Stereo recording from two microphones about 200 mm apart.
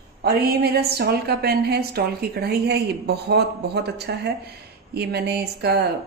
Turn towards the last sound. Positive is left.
turn(degrees=-55)  # may be behind; listen again after turning